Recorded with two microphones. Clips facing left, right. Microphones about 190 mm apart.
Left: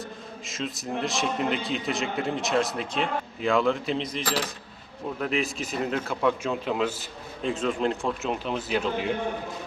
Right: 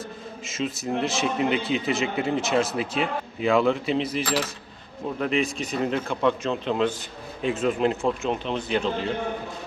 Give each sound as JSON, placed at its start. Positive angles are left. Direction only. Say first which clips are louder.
{"t": 0.4, "sound": "a man's voice", "louder": "right 5 dB", "side_deg": 0}
{"t": 5.2, "sound": "a man's voice", "louder": "right 3 dB", "side_deg": 0}
{"t": 7.4, "sound": "a man's voice", "louder": "right 3 dB", "side_deg": -5}